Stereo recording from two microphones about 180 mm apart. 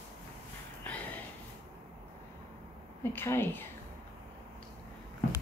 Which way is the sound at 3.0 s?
15° left (ahead or behind).